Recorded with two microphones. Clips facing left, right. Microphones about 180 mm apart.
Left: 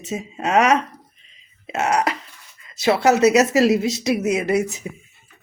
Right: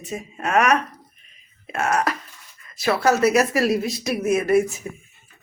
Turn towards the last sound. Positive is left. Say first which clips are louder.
# right 1 dB
turn(degrees=20)  # may be behind; listen again after turning